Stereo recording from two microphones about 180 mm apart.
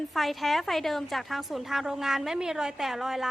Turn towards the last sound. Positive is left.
turn(degrees=0)  # may be behind; listen again after turning